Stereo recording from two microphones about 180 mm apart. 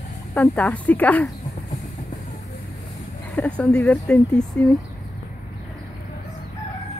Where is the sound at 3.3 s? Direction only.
5° left (ahead or behind).